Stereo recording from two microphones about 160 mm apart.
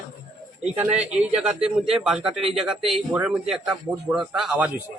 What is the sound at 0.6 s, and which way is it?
A man's voice, 5° right (ahead or behind).